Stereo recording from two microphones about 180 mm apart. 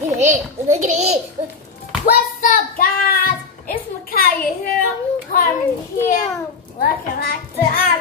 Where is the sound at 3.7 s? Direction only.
50° left (ahead or behind).